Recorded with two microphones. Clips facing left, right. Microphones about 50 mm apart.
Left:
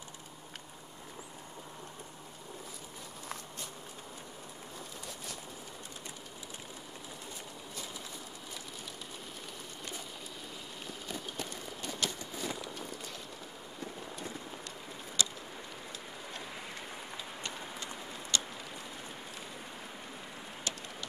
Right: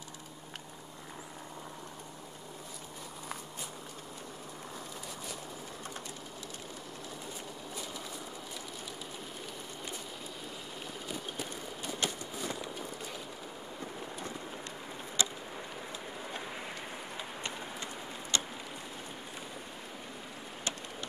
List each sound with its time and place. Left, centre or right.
12.0 s walk: right
15.2 s vehicle: right
18.3 s vehicle: right